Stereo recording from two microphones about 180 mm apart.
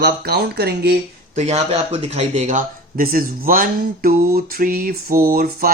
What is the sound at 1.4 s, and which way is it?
Speech, 35° right (ahead or behind).